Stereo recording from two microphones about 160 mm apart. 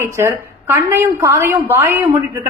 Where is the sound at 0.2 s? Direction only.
15° right (ahead or behind).